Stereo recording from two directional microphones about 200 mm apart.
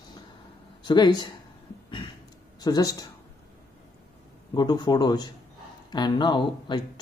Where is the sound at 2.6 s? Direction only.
20° left (ahead or behind).